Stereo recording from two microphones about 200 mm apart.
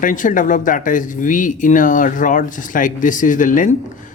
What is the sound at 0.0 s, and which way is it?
Speech, 40° left (ahead or behind).